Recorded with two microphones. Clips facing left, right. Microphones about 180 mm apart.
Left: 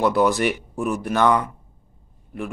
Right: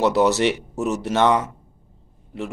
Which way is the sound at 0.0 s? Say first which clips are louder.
Right 1 dB; 25° right (ahead or behind).